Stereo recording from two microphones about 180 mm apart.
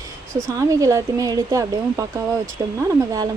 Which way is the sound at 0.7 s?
20° right (ahead or behind).